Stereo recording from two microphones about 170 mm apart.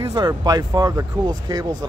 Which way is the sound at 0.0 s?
25° right (ahead or behind).